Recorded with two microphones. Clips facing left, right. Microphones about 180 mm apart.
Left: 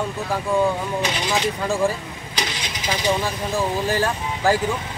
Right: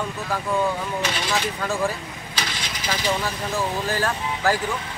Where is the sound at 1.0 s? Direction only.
15° left (ahead or behind).